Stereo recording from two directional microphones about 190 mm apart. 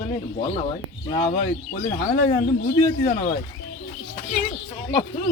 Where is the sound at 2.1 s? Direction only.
45° left (ahead or behind).